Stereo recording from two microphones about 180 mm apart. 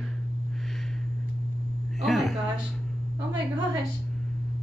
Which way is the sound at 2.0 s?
Centre (ahead or behind).